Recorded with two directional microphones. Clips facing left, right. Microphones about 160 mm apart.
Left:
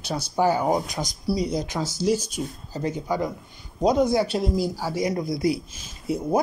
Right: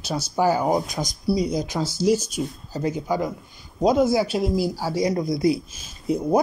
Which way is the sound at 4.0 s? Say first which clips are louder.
Right 1 dB; 5° right (ahead or behind).